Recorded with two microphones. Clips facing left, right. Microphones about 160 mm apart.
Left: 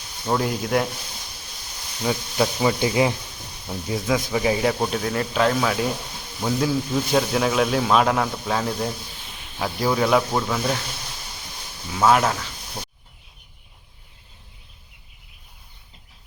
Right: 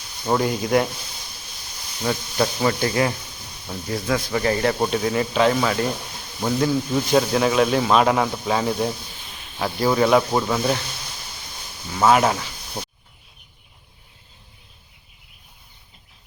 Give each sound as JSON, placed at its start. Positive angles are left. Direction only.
{"t": 0.3, "sound": "speech", "side_deg": 0}
{"t": 2.0, "sound": "speech", "side_deg": 5}
{"t": 11.9, "sound": "speech", "side_deg": -5}